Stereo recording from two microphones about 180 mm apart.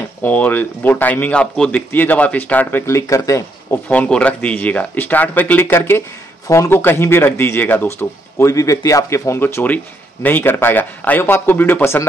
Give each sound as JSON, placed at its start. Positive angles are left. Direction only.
{"t": 0.2, "sound": "speech", "side_deg": 10}